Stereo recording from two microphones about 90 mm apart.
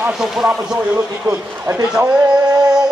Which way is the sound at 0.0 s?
5° right (ahead or behind).